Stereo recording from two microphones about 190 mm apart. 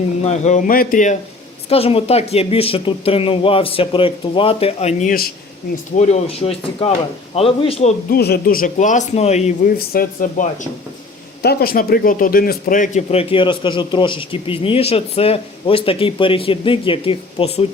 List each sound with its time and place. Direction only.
0.3 s a man's voice: 40° left (ahead or behind)
1.7 s a man's voice: 30° left (ahead or behind)
8.1 s a man's voice: 55° left (ahead or behind); by 9.5 s 35° left (ahead or behind)
9.6 s a man's voice: 50° left (ahead or behind); by 17.7 s 30° left (ahead or behind)